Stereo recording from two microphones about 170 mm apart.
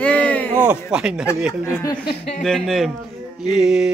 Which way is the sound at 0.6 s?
5° right (ahead or behind).